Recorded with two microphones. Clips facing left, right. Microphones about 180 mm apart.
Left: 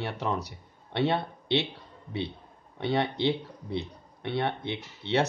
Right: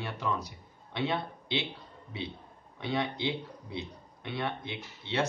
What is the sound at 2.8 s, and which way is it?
Speech, 65° left (ahead or behind).